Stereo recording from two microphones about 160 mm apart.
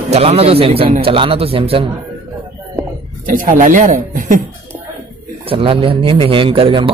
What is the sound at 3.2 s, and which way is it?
Speech, 55° right (ahead or behind).